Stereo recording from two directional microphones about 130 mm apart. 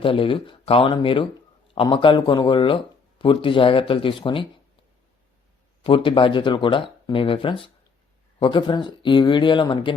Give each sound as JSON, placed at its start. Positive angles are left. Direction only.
{"t": 0.0, "sound": "speech", "side_deg": 45}
{"t": 5.8, "sound": "speech", "side_deg": 40}